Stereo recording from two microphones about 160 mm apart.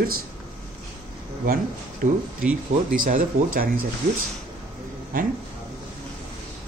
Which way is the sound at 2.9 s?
60° right (ahead or behind).